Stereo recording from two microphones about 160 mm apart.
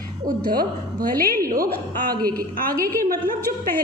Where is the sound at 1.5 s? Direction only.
65° right (ahead or behind).